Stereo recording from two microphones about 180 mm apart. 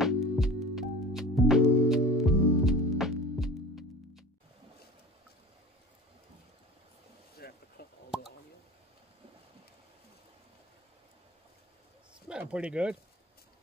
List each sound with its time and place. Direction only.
0.0 s music: centre (ahead or behind)
7.3 s a sound: 60° left (ahead or behind)
12.3 s speech: 5° right (ahead or behind)